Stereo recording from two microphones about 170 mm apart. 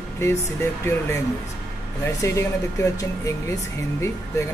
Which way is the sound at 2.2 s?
15° left (ahead or behind).